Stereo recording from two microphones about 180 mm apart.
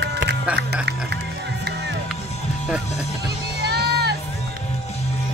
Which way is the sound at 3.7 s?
65° right (ahead or behind).